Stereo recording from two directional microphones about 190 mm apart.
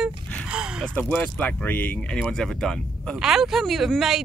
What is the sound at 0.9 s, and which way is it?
Speech, 5° left (ahead or behind).